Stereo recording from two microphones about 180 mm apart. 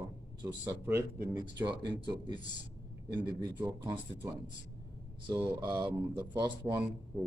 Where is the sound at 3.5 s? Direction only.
10° right (ahead or behind).